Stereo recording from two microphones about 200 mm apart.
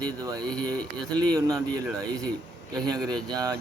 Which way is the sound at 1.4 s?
20° right (ahead or behind).